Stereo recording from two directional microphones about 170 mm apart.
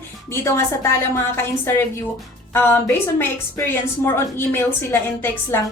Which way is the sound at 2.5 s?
15° left (ahead or behind).